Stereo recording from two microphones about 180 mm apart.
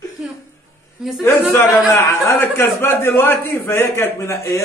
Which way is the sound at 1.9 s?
15° left (ahead or behind).